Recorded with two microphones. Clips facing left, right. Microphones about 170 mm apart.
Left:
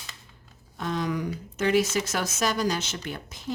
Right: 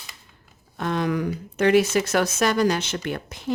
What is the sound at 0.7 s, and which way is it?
Speech, 65° right (ahead or behind).